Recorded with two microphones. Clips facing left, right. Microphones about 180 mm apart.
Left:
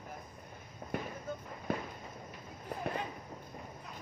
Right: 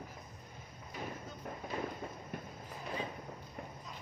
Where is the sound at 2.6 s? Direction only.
60° left (ahead or behind).